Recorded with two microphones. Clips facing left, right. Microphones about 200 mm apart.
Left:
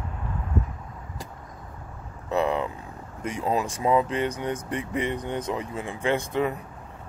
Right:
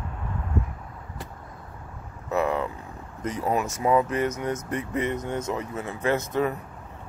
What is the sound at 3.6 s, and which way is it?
Speech, 25° left (ahead or behind).